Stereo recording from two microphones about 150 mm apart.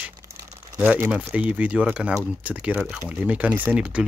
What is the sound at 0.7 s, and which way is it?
Speech, 15° right (ahead or behind).